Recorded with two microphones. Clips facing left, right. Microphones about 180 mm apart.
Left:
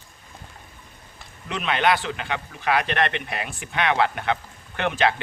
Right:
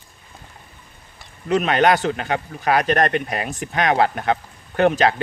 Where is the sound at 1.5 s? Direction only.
45° right (ahead or behind).